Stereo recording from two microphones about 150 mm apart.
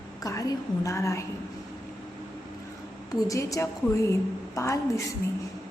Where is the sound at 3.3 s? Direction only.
20° left (ahead or behind).